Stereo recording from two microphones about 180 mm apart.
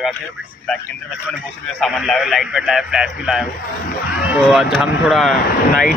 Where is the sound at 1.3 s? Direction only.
Centre (ahead or behind).